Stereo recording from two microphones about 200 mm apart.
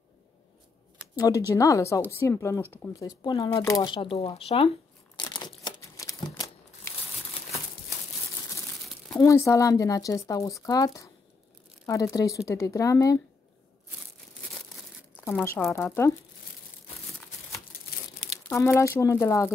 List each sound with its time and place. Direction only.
1.1 s speech: 20° left (ahead or behind)
5.1 s crumpling: 20° left (ahead or behind)
9.2 s speech: 15° left (ahead or behind)
15.2 s speech: 10° left (ahead or behind)
18.5 s speech: 15° left (ahead or behind)